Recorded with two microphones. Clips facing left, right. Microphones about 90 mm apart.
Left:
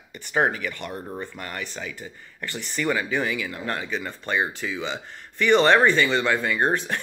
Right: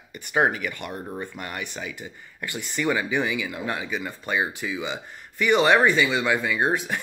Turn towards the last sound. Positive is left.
turn(degrees=-5)  # may be behind; listen again after turning